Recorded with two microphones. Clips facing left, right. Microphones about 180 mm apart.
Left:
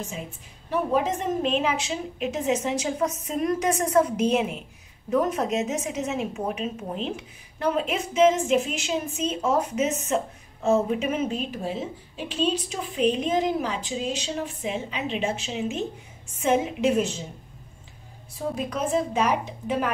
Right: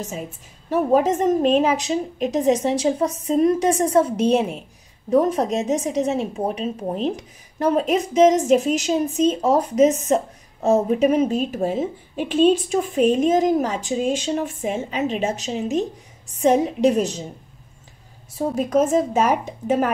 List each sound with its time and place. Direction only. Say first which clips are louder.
0.7 s a woman's voice: right 6 dB; 45° right (ahead or behind)
18.5 s a woman's voice: right 8 dB; 45° right (ahead or behind)